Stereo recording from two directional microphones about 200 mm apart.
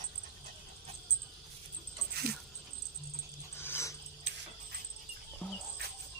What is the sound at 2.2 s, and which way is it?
Dog, 50° right (ahead or behind).